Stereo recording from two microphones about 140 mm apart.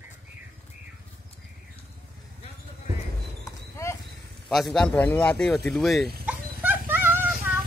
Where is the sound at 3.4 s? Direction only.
20° left (ahead or behind).